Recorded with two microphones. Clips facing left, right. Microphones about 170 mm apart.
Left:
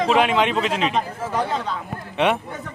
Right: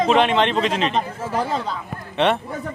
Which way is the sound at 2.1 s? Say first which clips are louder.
Right 1 dB; 10° left (ahead or behind).